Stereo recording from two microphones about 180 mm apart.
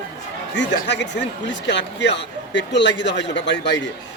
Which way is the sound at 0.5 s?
80° left.